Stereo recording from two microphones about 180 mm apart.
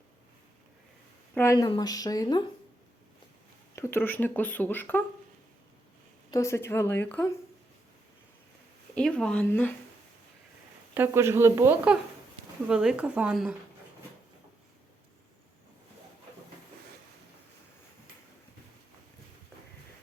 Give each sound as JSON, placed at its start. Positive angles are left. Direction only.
{"t": 1.4, "sound": "speech", "side_deg": 20}
{"t": 3.8, "sound": "speech", "side_deg": 15}
{"t": 6.3, "sound": "speech", "side_deg": 15}
{"t": 9.0, "sound": "speech", "side_deg": 5}
{"t": 10.9, "sound": "speech", "side_deg": -15}